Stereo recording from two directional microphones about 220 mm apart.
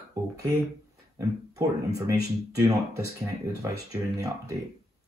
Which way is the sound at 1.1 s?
15° right (ahead or behind).